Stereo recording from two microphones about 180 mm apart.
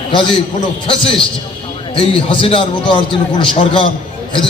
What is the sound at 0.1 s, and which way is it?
A man's voice, 30° left (ahead or behind).